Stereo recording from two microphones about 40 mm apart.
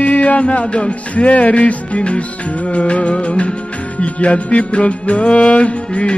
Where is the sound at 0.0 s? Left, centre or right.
Left.